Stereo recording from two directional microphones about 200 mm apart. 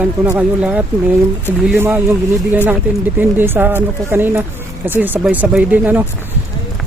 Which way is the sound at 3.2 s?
10° right (ahead or behind).